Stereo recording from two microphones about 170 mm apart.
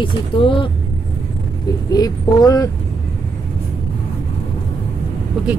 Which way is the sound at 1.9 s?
20° left (ahead or behind).